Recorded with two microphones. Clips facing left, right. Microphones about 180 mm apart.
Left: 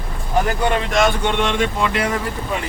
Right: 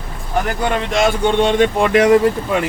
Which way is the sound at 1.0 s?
35° right (ahead or behind).